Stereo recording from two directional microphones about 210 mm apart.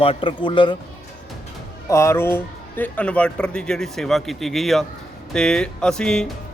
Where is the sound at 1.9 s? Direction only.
15° left (ahead or behind).